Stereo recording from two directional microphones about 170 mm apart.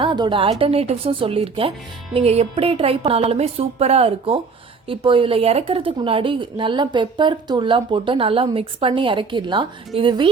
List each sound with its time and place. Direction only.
0.0 s a woman's voice: 30° right (ahead or behind)